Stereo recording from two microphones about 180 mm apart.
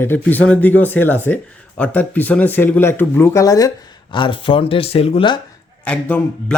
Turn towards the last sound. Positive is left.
turn(degrees=5)  # may be behind; listen again after turning